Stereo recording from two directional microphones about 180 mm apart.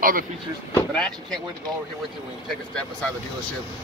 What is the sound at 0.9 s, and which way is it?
Speech, 5° left (ahead or behind).